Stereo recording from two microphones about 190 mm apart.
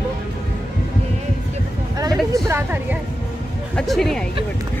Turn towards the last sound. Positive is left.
turn(degrees=0)  # may be behind; listen again after turning